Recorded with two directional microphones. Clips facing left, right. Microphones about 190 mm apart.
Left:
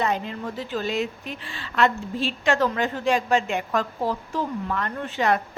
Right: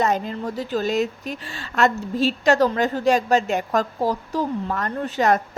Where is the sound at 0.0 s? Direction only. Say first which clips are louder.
Right 4 dB; 40° right (ahead or behind).